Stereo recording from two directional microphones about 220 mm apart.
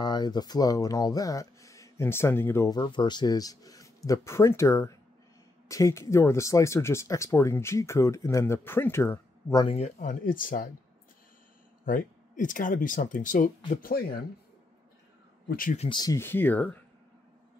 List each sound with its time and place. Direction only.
0.0 s speech: 20° left (ahead or behind)
9.8 s speech: 35° left (ahead or behind)
11.8 s speech: 35° left (ahead or behind)
15.4 s speech: 40° left (ahead or behind)
16.0 s speech: 15° left (ahead or behind)